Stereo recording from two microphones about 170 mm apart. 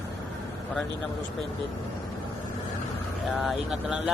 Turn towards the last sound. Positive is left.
turn(degrees=0)  # may be behind; listen again after turning